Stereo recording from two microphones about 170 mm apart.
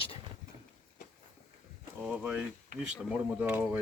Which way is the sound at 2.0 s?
5° right (ahead or behind).